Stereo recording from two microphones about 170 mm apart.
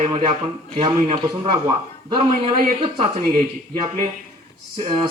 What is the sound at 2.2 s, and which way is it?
Speech, 35° right (ahead or behind).